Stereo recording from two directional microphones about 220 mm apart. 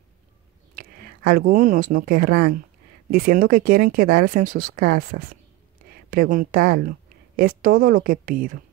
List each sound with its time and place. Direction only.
0.7 s a woman's voice: 40° right (ahead or behind)